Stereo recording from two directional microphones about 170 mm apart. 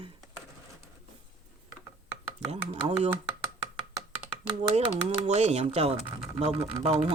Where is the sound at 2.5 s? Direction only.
40° right (ahead or behind).